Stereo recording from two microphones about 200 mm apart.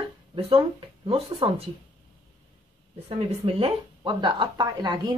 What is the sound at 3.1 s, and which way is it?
Speech, 30° right (ahead or behind).